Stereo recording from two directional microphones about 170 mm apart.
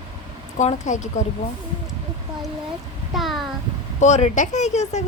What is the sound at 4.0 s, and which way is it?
Speech, 40° left (ahead or behind).